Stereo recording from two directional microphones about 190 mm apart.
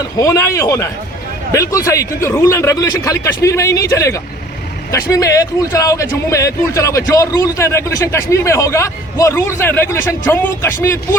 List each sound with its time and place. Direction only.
0.2 s a man's voice: 15° left (ahead or behind)